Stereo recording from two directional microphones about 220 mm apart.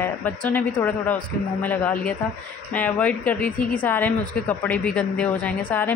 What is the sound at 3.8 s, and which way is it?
A woman's voice, 5° left (ahead or behind).